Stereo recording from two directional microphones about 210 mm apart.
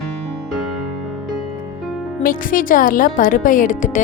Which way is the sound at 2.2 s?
40° left (ahead or behind).